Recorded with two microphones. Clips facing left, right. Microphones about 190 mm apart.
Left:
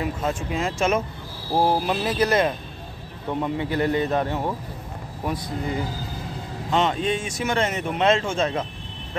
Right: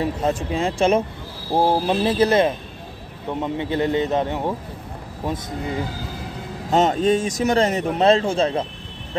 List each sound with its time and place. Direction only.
0.0 s a man's voice: 35° right (ahead or behind)
6.7 s speech: 40° right (ahead or behind)